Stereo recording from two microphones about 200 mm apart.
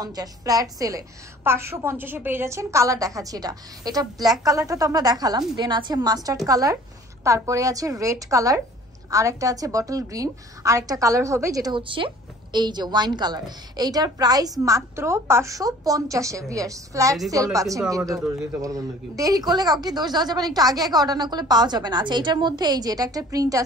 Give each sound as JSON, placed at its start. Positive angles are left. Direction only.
{"t": 0.0, "sound": "a woman's voice", "side_deg": -20}